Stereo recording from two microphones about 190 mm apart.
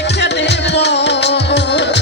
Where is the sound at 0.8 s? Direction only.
65° left (ahead or behind).